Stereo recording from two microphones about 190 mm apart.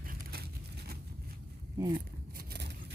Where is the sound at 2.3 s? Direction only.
55° right (ahead or behind).